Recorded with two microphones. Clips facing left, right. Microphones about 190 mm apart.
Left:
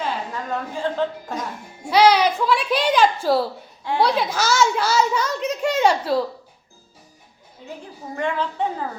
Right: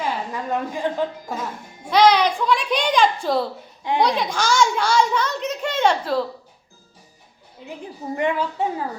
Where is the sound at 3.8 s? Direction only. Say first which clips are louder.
Even; 20° right (ahead or behind).